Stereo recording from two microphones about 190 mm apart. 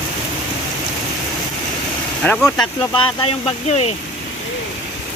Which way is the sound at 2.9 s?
25° left (ahead or behind).